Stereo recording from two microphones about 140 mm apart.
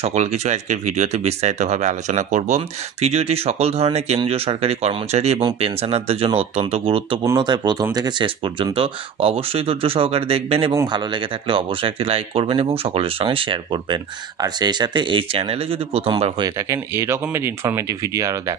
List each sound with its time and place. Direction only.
0.0 s speech: 55° right (ahead or behind)
10.7 s speech: 30° right (ahead or behind)
16.5 s speech: 20° right (ahead or behind)